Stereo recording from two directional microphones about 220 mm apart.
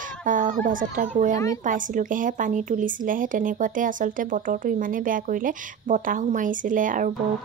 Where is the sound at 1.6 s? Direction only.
35° right (ahead or behind).